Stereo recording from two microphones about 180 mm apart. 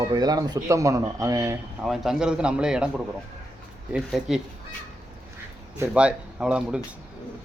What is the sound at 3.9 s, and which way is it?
Speech, 5° right (ahead or behind).